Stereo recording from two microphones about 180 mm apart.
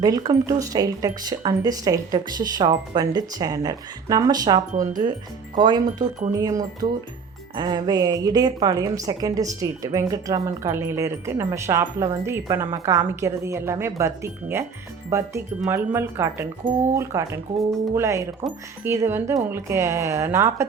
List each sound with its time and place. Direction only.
0.0 s a woman's voice: 20° right (ahead or behind)